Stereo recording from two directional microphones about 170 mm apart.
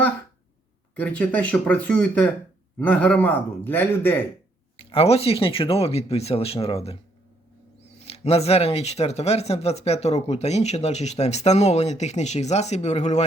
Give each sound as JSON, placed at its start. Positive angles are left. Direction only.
{"t": 0.9, "sound": "speech", "side_deg": 10}
{"t": 4.8, "sound": "speech", "side_deg": 35}
{"t": 7.9, "sound": "speech", "side_deg": 35}